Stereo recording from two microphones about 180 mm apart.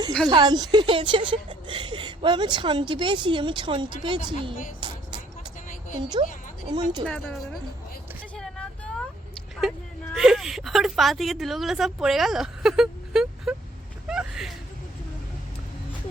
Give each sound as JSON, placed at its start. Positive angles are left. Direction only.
{"t": 0.3, "sound": "a woman's voice", "side_deg": -25}
{"t": 7.0, "sound": "a woman's voice", "side_deg": 5}
{"t": 8.4, "sound": "vehicle", "side_deg": 5}
{"t": 10.2, "sound": "a woman's voice", "side_deg": 0}
{"t": 14.1, "sound": "a sound", "side_deg": -5}